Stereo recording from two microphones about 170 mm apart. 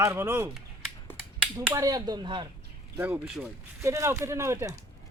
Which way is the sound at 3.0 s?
5° right (ahead or behind).